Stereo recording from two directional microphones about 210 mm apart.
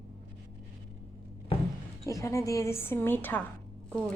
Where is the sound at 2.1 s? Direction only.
15° left (ahead or behind).